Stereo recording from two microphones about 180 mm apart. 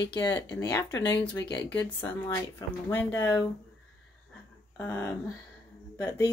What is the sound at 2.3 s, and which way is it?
Speech, 20° left (ahead or behind).